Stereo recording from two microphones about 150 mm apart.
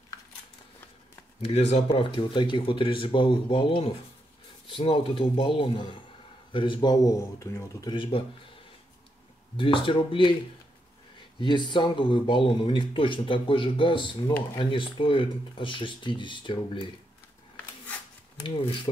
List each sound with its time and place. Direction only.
1.4 s speech: 45° left (ahead or behind)
9.6 s speech: 35° left (ahead or behind)
11.3 s speech: 30° left (ahead or behind)
18.4 s speech: 35° left (ahead or behind)